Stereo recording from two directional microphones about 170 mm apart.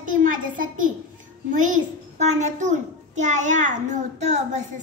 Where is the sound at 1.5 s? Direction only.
50° right (ahead or behind).